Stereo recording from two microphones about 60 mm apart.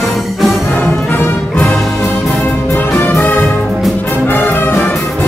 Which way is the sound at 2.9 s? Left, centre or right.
Left.